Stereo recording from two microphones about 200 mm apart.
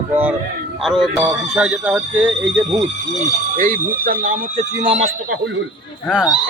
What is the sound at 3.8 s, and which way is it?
Speech, 45° right (ahead or behind).